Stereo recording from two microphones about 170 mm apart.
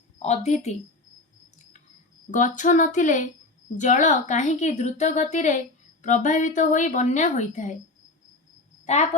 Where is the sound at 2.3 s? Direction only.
50° left (ahead or behind).